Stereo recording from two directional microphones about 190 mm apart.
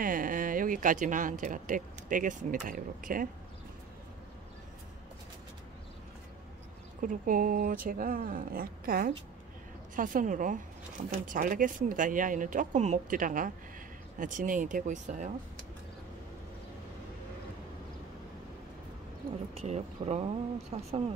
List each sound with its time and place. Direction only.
0.0 s speech: 45° right (ahead or behind)
7.0 s speech: 45° right (ahead or behind)
19.5 s speech: 35° right (ahead or behind)